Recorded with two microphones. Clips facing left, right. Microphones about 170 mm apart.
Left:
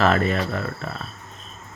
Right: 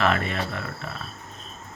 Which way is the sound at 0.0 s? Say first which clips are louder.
Left 4 dB; 40° left (ahead or behind).